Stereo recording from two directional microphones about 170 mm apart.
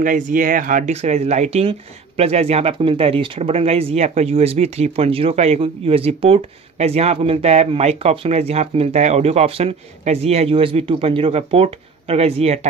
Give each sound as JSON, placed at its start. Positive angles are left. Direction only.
{"t": 0.0, "sound": "speech", "side_deg": -50}